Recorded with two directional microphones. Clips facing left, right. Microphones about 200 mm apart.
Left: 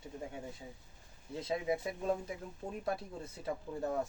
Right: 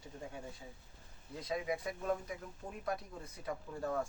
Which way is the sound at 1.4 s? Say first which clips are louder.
Left 3 dB; 25° left (ahead or behind).